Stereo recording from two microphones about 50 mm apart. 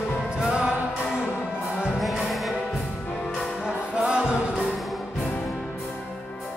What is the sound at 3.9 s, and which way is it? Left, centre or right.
Music, right.